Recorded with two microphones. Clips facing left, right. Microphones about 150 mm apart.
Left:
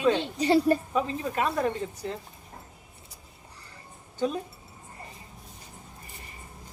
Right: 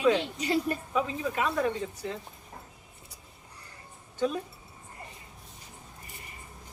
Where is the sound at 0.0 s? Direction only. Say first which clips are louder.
Left 1 dB; 30° left (ahead or behind).